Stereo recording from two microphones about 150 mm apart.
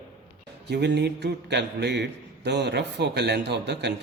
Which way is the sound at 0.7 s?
90° right.